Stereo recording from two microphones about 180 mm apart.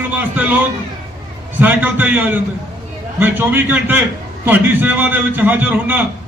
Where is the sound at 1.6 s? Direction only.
10° right (ahead or behind).